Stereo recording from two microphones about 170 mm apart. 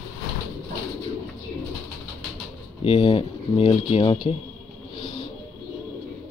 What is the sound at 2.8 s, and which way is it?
Speech, 35° left (ahead or behind).